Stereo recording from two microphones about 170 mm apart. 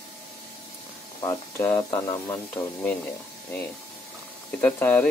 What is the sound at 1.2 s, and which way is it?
Speech, 15° left (ahead or behind).